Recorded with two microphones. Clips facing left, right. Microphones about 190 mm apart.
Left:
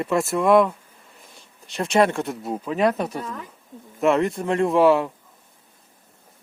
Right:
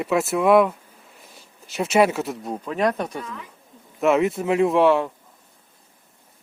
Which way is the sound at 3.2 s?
35° left (ahead or behind).